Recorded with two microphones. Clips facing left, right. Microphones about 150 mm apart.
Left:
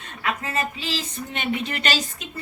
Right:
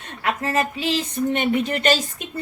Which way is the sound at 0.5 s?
60° right (ahead or behind).